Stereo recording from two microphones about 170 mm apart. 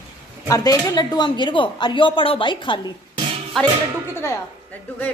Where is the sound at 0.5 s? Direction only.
20° left (ahead or behind).